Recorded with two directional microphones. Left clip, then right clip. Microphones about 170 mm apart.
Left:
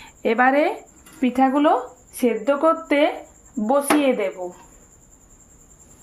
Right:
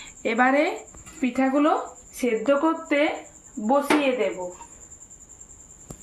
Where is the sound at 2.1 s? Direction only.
90° left.